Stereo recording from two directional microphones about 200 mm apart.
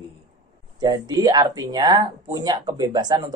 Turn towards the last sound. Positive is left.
turn(degrees=-20)  # may be behind; listen again after turning